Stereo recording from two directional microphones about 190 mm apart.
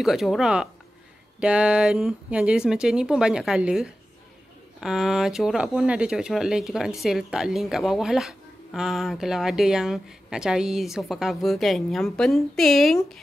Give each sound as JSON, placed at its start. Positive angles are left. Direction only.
{"t": 0.0, "sound": "speech", "side_deg": 0}